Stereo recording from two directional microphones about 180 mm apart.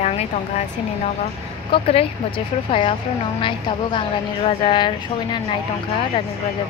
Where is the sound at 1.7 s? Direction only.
30° left (ahead or behind).